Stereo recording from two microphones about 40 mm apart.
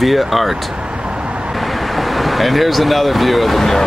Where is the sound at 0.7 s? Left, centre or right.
Right.